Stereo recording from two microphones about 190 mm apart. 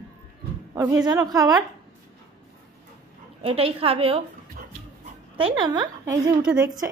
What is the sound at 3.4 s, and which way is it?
Speech, 30° right (ahead or behind).